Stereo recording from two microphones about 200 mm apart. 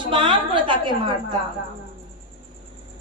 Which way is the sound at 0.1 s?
25° right (ahead or behind).